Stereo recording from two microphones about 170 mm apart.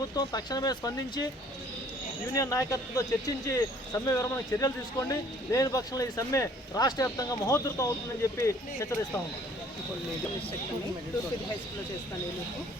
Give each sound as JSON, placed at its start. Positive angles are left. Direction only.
{"t": 0.2, "sound": "speech", "side_deg": 25}
{"t": 2.3, "sound": "speech", "side_deg": 20}